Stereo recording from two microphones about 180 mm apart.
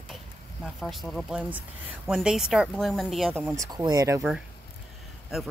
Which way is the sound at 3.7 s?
20° right (ahead or behind).